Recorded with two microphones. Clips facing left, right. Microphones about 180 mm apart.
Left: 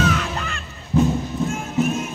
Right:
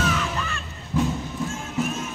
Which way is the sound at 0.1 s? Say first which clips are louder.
Left 2 dB; 55° left (ahead or behind).